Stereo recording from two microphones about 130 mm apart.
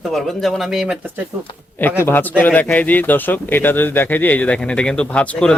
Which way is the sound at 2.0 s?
15° left (ahead or behind).